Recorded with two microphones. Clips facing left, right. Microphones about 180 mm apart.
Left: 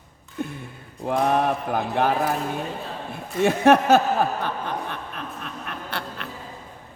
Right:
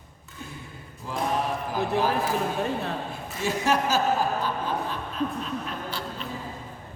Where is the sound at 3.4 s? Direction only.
60° left (ahead or behind).